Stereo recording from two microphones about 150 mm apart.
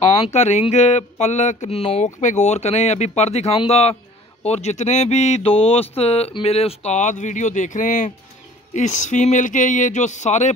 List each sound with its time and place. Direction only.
0.2 s speech: 50° left (ahead or behind)